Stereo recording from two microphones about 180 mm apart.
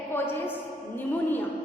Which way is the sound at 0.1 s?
10° left (ahead or behind).